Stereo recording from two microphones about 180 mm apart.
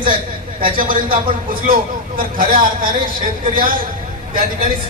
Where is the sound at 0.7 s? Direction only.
50° right (ahead or behind).